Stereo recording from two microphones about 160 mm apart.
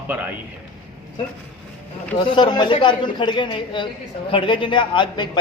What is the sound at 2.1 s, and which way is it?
A man's voice, 30° left (ahead or behind).